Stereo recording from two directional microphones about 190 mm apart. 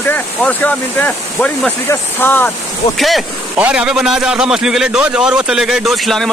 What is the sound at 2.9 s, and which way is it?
A man's voice, centre (ahead or behind).